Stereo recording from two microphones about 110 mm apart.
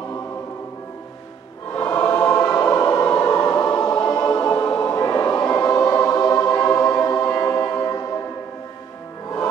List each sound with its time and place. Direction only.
2.2 s choir: 25° left (ahead or behind)
6.8 s music: 35° left (ahead or behind)